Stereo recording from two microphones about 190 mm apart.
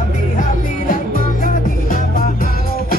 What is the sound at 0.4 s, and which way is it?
Music, 45° left (ahead or behind).